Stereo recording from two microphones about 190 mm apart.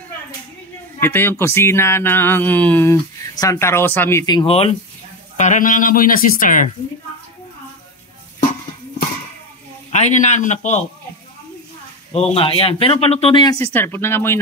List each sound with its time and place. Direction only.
1.0 s speech: 10° left (ahead or behind); by 4.7 s 30° left (ahead or behind)
5.4 s speech: 40° left (ahead or behind)
9.8 s a man's voice: 35° left (ahead or behind)
12.1 s speech: 30° left (ahead or behind); by 14.4 s 15° left (ahead or behind)